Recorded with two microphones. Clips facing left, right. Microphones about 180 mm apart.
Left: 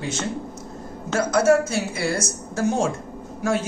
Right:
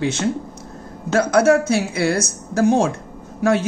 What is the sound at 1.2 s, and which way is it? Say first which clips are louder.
A woman's voice: right 3 dB; 65° right (ahead or behind).